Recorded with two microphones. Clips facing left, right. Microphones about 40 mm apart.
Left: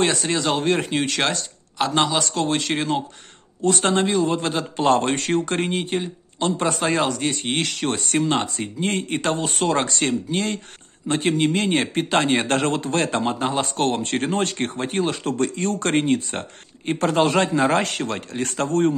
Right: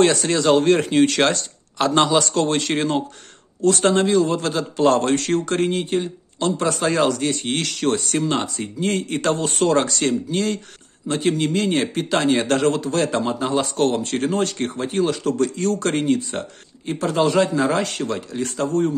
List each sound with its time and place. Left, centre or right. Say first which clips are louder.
0.0 s speech: right 4 dB; centre
3.6 s a man's voice: right 3 dB; centre
8.7 s a man's voice: right 2 dB; left